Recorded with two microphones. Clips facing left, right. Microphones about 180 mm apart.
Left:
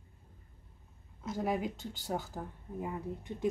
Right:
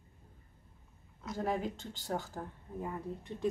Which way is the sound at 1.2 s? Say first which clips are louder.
Left 1 dB; 15° left (ahead or behind).